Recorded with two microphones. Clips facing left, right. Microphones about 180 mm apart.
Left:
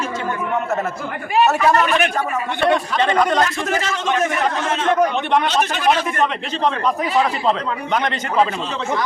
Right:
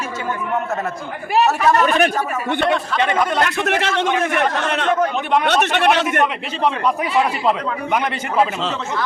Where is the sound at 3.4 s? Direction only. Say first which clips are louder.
Right 2 dB; 70° right (ahead or behind).